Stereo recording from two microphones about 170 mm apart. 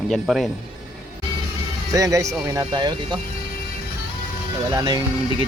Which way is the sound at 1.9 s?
20° right (ahead or behind).